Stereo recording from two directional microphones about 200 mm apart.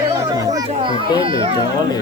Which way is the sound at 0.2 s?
15° right (ahead or behind).